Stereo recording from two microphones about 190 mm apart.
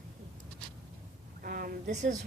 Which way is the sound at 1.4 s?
50° right (ahead or behind).